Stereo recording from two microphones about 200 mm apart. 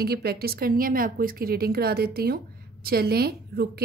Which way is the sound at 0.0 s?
50° right (ahead or behind).